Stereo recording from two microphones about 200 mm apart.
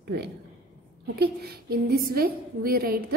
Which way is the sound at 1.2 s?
50° right (ahead or behind).